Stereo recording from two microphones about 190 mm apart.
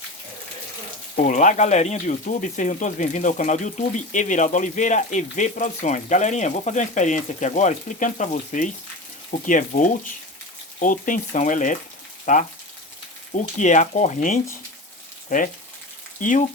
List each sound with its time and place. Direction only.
1.1 s speech: 40° left (ahead or behind)